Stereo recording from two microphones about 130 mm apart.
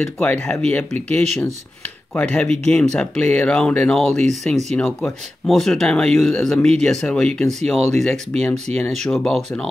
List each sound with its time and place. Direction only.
0.2 s speech: 10° left (ahead or behind)
0.9 s speech: 60° right (ahead or behind)
2.1 s speech: 10° left (ahead or behind)